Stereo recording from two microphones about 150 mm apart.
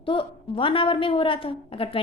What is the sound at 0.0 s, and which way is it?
A woman's voice, 35° left (ahead or behind).